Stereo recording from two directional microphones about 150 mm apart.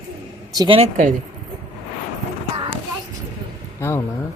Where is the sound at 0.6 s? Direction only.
35° right (ahead or behind).